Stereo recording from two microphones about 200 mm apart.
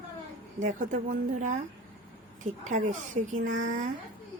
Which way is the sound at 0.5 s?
40° right (ahead or behind).